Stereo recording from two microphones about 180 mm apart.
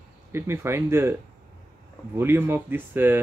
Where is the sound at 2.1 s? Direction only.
10° right (ahead or behind).